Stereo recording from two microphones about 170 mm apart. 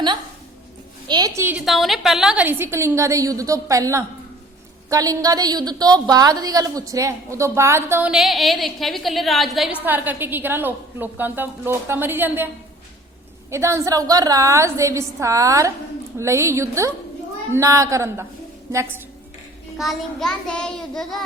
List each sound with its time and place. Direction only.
1.0 s a woman's voice: 25° right (ahead or behind)
8.1 s a woman's voice: centre (ahead or behind)
9.8 s a woman's voice: 10° right (ahead or behind)
13.5 s a woman's voice: 15° right (ahead or behind)
19.8 s a woman's voice: centre (ahead or behind)